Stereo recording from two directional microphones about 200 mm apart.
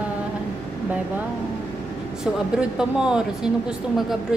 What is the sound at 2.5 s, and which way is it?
Speech, 5° right (ahead or behind).